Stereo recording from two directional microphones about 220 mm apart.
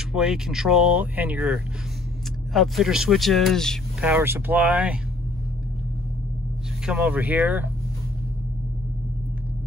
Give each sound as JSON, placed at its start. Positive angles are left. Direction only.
{"t": 0.1, "sound": "speech", "side_deg": 0}
{"t": 4.1, "sound": "speech", "side_deg": -10}
{"t": 6.9, "sound": "speech", "side_deg": -5}